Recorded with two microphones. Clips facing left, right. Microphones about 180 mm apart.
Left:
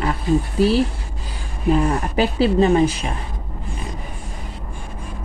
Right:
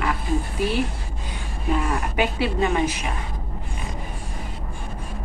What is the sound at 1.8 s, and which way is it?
A woman's voice, 35° left (ahead or behind).